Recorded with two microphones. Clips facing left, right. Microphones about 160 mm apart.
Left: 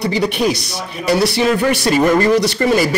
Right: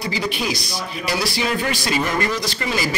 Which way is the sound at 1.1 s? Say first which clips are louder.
Left 9 dB; 70° left (ahead or behind).